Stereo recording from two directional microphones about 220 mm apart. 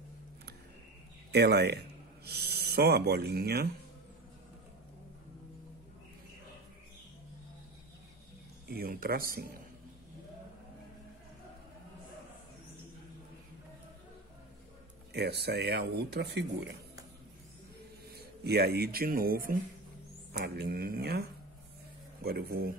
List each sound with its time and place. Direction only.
1.3 s speech: 50° right (ahead or behind)
8.6 s speech: 45° right (ahead or behind)
15.1 s speech: 50° right (ahead or behind)
18.1 s a man's voice: 45° right (ahead or behind)